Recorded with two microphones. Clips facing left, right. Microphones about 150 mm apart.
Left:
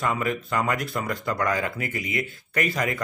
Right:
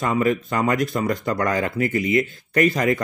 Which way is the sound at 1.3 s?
40° right (ahead or behind).